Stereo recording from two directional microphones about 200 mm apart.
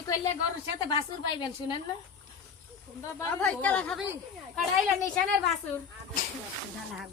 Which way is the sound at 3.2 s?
10° left (ahead or behind).